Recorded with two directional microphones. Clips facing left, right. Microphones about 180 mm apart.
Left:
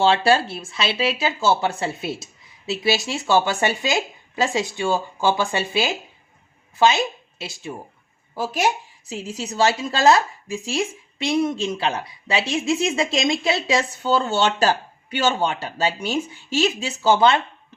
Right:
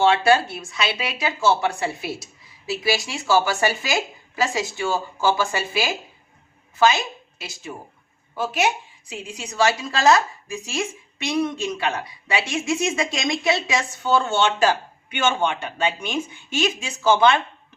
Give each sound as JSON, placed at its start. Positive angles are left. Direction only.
{"t": 0.0, "sound": "speech", "side_deg": 30}
{"t": 8.4, "sound": "speech", "side_deg": 35}
{"t": 14.0, "sound": "speech", "side_deg": 40}